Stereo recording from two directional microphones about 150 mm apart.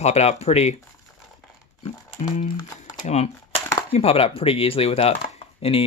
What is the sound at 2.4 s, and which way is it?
Speech, 30° left (ahead or behind).